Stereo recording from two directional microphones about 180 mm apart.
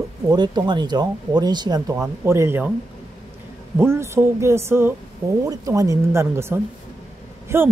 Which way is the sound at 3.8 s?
15° right (ahead or behind).